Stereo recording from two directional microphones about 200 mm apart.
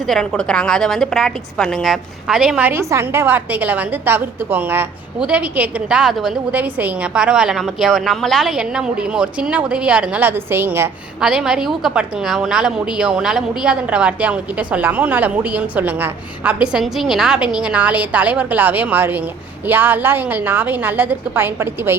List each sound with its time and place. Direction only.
0.1 s a woman's voice: 5° left (ahead or behind)